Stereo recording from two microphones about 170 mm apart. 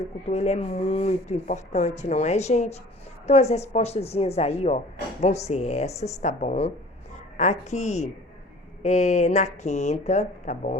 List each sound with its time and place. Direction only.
0.3 s speech: 40° left (ahead or behind)